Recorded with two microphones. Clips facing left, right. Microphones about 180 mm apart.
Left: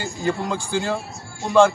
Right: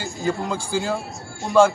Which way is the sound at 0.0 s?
Centre (ahead or behind).